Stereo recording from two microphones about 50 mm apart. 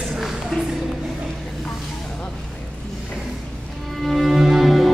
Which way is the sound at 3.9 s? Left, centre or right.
Centre.